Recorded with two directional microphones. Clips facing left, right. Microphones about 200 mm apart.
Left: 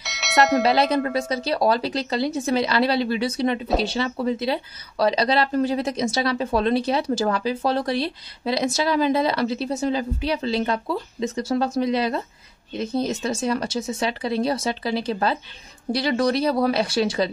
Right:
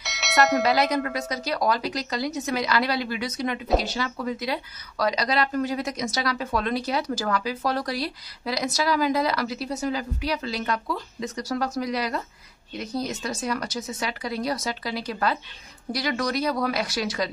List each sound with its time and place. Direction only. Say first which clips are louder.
0.0 s bell: left 2 dB; centre (ahead or behind)
0.6 s speech: left 3 dB; 30° left (ahead or behind)